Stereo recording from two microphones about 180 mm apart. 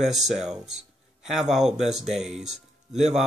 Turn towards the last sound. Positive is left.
turn(degrees=0)  # may be behind; listen again after turning